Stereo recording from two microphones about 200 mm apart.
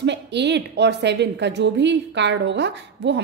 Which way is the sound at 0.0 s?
60° right (ahead or behind).